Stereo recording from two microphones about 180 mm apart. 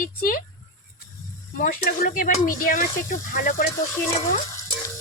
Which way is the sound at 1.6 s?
50° left (ahead or behind).